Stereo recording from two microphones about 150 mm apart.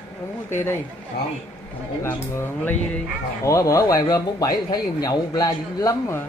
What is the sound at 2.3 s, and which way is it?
Speech, 10° left (ahead or behind).